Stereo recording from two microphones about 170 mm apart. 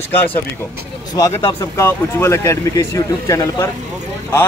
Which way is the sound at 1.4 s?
15° left (ahead or behind).